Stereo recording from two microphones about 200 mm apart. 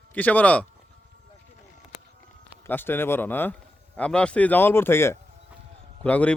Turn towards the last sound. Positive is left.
turn(degrees=5)  # may be behind; listen again after turning